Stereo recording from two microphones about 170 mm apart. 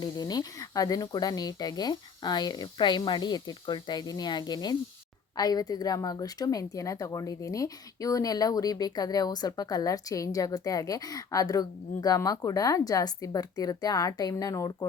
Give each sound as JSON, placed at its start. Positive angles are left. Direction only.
{"t": 0.0, "sound": "a woman's voice", "side_deg": 25}